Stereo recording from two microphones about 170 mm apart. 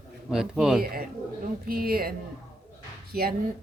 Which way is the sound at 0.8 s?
60° right (ahead or behind).